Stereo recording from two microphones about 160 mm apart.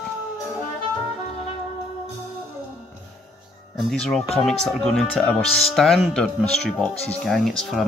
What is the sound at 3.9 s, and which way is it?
Speech, 5° left (ahead or behind).